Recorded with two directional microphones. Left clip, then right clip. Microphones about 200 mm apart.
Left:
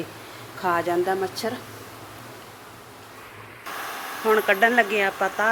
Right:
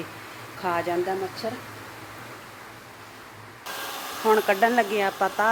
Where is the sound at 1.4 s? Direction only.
20° left (ahead or behind).